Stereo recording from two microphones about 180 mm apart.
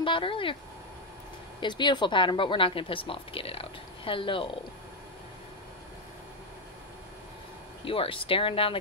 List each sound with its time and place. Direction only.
0.0 s a woman's voice: 30° left (ahead or behind)
1.6 s a woman's voice: 25° left (ahead or behind)
7.8 s speech: 30° left (ahead or behind)